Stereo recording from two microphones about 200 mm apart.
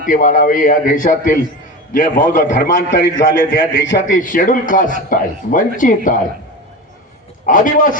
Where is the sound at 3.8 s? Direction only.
65° left (ahead or behind).